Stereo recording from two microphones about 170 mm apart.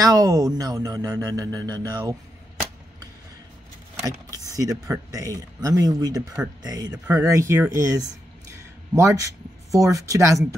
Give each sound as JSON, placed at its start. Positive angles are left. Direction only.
{"t": 0.0, "sound": "speech", "side_deg": -20}
{"t": 4.4, "sound": "speech", "side_deg": -20}
{"t": 6.9, "sound": "speech", "side_deg": -10}